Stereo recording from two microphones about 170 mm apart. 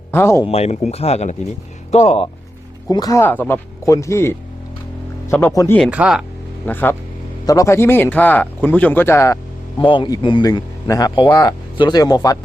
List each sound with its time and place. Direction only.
0.1 s speech: 15° left (ahead or behind)
0.4 s speech: 40° left (ahead or behind)
2.9 s speech: 20° left (ahead or behind)
5.5 s speech: 15° left (ahead or behind)
5.9 s speech: 5° right (ahead or behind)
6.7 s speech: 10° left (ahead or behind)
9.8 s speech: 30° left (ahead or behind)